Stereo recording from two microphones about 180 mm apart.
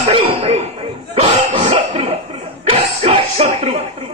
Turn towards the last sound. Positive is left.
turn(degrees=-35)  # may be behind; listen again after turning